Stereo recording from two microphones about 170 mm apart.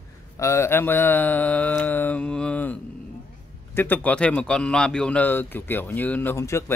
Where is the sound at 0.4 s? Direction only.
15° left (ahead or behind).